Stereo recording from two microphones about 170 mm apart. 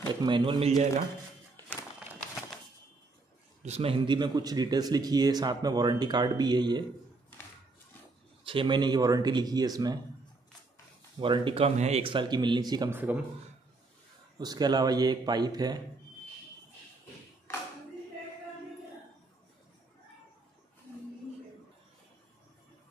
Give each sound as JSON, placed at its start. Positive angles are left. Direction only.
{"t": 0.2, "sound": "a man's voice", "side_deg": -25}
{"t": 3.6, "sound": "a man's voice", "side_deg": -35}
{"t": 8.5, "sound": "a man's voice", "side_deg": -30}
{"t": 11.1, "sound": "a man's voice", "side_deg": -30}
{"t": 12.9, "sound": "a man's voice", "side_deg": -10}
{"t": 14.4, "sound": "a man's voice", "side_deg": -25}